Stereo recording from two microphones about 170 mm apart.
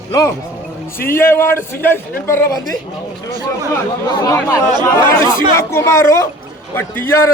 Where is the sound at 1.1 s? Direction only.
15° left (ahead or behind).